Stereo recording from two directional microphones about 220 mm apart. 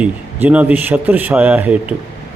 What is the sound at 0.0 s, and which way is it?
Speech, 5° right (ahead or behind).